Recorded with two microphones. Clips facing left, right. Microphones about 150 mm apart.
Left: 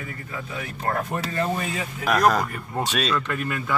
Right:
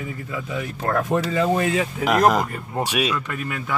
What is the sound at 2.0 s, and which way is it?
Speech, 20° right (ahead or behind).